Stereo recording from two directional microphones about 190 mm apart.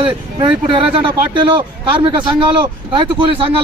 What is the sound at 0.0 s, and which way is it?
Speech, 25° right (ahead or behind).